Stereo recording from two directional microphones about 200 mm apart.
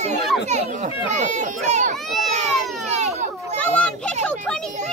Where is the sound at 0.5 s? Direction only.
35° right (ahead or behind).